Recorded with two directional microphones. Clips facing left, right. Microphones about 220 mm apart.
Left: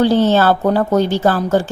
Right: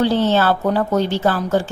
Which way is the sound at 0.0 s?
45° left (ahead or behind).